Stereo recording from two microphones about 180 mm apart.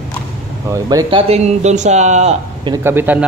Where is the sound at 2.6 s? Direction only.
15° right (ahead or behind).